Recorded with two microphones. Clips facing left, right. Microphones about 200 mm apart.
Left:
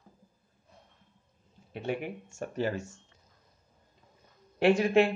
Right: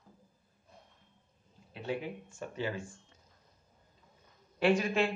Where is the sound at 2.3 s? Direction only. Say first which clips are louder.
Left 6 dB; 45° left (ahead or behind).